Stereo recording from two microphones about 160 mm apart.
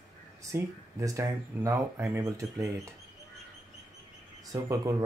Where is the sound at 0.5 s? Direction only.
20° right (ahead or behind).